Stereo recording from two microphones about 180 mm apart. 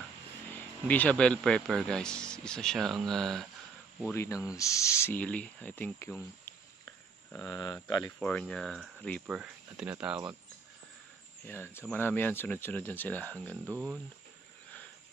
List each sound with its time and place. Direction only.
0.5 s speech: 10° left (ahead or behind)
4.0 s speech: 15° left (ahead or behind)
7.3 s speech: 15° left (ahead or behind)
8.2 s speech: 5° left (ahead or behind)
11.4 s speech: 10° left (ahead or behind)
13.7 s speech: 10° right (ahead or behind)